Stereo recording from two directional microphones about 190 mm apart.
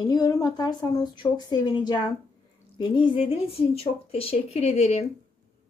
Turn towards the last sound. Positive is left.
turn(degrees=35)  # may be behind; listen again after turning